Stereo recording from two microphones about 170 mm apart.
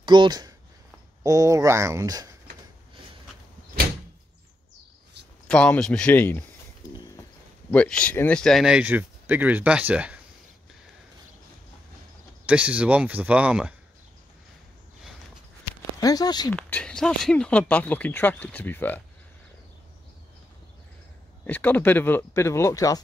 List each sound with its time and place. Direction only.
0.0 s speech: 25° right (ahead or behind)
5.5 s speech: 5° left (ahead or behind)
7.7 s speech: 5° left (ahead or behind)
12.4 s speech: 10° right (ahead or behind)
16.0 s speech: 20° left (ahead or behind)
16.4 s speech: 5° left (ahead or behind)
21.5 s speech: 10° left (ahead or behind)